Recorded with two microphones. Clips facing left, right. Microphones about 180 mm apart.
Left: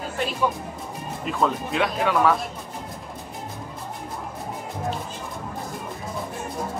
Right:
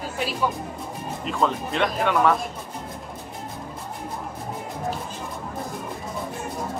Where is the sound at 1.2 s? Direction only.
5° left (ahead or behind).